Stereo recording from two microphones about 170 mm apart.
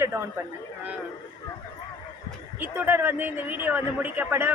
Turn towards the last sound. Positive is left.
turn(degrees=-10)  # may be behind; listen again after turning